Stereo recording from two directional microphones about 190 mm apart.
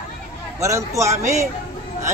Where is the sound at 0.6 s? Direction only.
15° right (ahead or behind).